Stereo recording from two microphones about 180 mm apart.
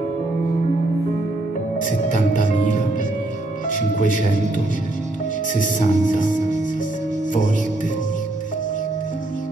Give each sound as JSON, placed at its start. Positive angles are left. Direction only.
{"t": 1.9, "sound": "music", "side_deg": 45}
{"t": 3.7, "sound": "speech", "side_deg": 45}
{"t": 5.5, "sound": "speech", "side_deg": 45}